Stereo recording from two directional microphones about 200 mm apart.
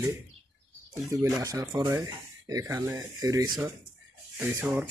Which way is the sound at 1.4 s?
20° right (ahead or behind).